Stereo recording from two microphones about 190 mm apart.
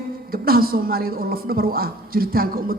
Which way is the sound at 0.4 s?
50° right (ahead or behind).